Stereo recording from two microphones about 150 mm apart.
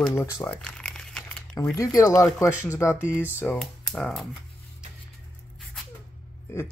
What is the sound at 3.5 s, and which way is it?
Speech, centre (ahead or behind).